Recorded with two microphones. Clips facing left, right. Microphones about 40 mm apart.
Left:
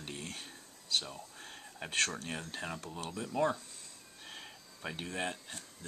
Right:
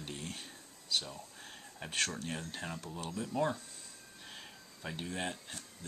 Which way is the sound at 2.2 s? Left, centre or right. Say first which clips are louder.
Even; centre.